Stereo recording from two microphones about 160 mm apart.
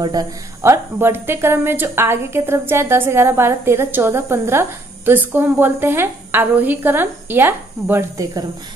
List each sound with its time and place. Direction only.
0.0 s a woman's voice: 25° right (ahead or behind)